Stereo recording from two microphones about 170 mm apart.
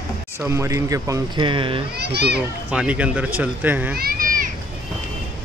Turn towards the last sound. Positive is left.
turn(degrees=-55)  # may be behind; listen again after turning